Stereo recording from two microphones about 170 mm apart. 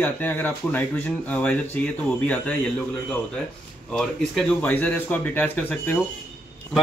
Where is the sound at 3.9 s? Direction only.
5° left (ahead or behind).